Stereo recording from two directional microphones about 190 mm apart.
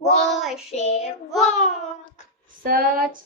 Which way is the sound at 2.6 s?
50° right (ahead or behind).